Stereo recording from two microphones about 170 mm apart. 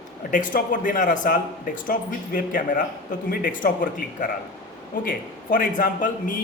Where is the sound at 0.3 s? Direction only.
50° left (ahead or behind).